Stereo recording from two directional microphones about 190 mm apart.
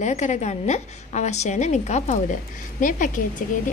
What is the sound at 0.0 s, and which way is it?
A woman's voice, 40° left (ahead or behind).